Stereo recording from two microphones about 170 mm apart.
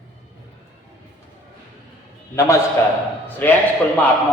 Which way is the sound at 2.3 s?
20° left (ahead or behind).